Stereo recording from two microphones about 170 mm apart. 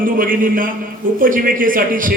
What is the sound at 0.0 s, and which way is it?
A man's voice, 55° right (ahead or behind).